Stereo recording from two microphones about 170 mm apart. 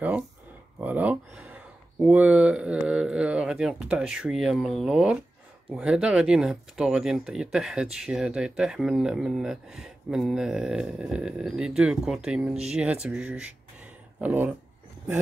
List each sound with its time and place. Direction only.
0.7 s speech: 10° right (ahead or behind)